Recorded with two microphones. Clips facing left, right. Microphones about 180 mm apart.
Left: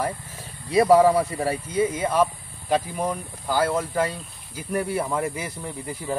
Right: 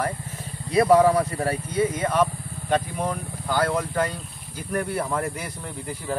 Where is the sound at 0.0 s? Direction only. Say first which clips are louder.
Even; 10° left (ahead or behind).